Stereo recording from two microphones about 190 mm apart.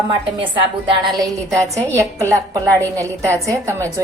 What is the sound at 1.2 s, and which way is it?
A woman's voice, 15° right (ahead or behind).